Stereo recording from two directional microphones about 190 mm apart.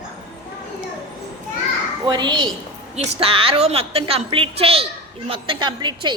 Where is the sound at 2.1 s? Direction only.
25° right (ahead or behind).